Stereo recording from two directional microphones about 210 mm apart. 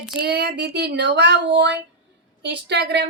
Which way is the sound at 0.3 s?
50° right (ahead or behind).